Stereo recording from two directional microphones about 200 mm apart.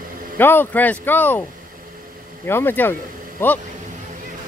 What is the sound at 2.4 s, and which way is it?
Speech, 10° left (ahead or behind).